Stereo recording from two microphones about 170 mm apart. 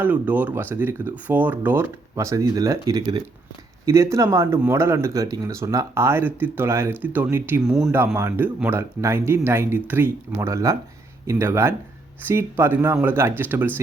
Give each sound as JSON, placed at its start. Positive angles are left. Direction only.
{"t": 0.0, "sound": "speech", "side_deg": -10}